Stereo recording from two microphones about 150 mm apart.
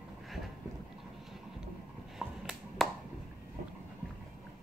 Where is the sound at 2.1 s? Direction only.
5° right (ahead or behind).